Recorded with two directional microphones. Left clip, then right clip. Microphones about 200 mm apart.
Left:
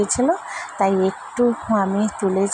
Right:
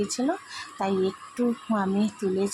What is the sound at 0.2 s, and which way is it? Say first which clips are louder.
Speech: left 9 dB; 20° left (ahead or behind).